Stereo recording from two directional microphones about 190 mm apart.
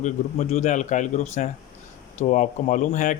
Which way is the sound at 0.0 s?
40° left (ahead or behind).